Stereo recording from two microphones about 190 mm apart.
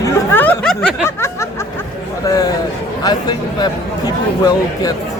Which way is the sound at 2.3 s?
20° left (ahead or behind).